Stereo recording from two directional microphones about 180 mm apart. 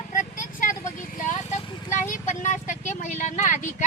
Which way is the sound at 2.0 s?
45° left (ahead or behind).